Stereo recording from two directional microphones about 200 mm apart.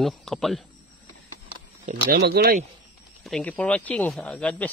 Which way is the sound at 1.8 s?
40° right (ahead or behind).